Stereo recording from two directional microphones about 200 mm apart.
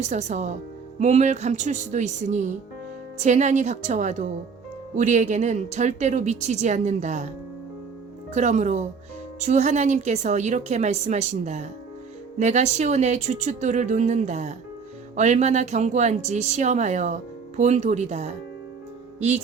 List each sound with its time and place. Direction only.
0.0 s a woman's voice: 35° right (ahead or behind)
8.3 s a woman's voice: 35° right (ahead or behind)